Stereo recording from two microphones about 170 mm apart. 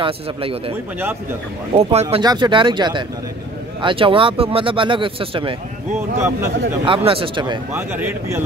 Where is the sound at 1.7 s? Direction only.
35° right (ahead or behind).